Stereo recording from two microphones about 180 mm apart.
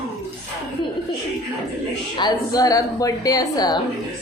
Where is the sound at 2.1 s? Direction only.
20° left (ahead or behind).